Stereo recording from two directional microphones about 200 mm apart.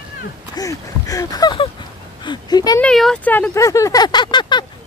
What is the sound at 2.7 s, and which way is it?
Speech, 5° left (ahead or behind).